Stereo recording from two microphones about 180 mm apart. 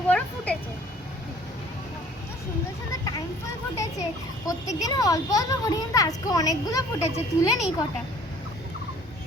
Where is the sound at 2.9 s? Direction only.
20° left (ahead or behind).